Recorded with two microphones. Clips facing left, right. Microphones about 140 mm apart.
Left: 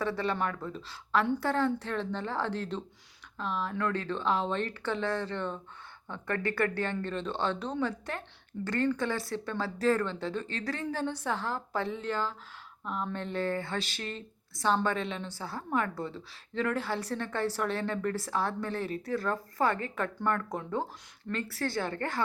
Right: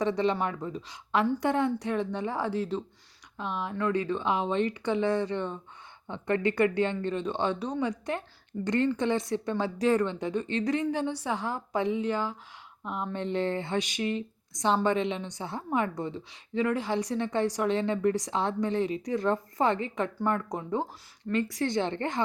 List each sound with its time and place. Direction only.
0.0 s a woman's voice: 20° right (ahead or behind)